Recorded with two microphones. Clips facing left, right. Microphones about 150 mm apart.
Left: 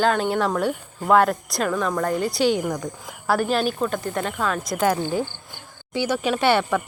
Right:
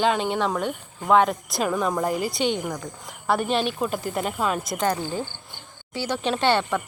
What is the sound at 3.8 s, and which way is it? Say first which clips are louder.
Speech: left 1 dB; 10° right (ahead or behind).